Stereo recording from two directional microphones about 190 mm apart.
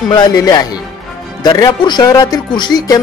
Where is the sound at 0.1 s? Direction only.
20° left (ahead or behind).